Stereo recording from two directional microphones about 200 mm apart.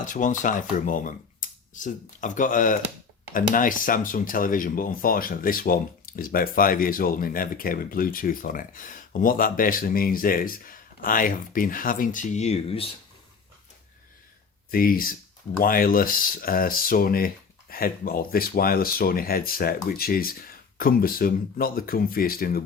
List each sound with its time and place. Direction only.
0.0 s speech: 40° left (ahead or behind)
14.7 s speech: 45° left (ahead or behind)